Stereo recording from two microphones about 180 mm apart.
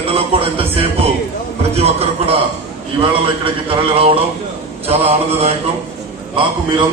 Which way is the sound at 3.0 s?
30° right (ahead or behind).